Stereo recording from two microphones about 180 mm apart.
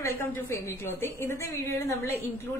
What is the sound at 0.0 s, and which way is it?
A woman's voice, 15° left (ahead or behind).